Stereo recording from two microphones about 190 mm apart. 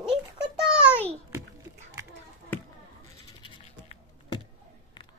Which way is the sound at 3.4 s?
25° left (ahead or behind).